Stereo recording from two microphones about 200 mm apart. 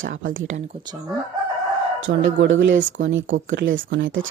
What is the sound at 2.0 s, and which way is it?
Speech, 70° right (ahead or behind).